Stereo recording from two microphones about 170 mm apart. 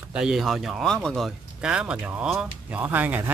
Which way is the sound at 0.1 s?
5° right (ahead or behind).